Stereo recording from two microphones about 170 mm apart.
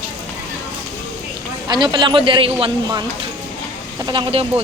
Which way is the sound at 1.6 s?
25° right (ahead or behind).